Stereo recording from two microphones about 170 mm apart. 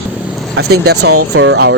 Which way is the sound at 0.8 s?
75° right (ahead or behind).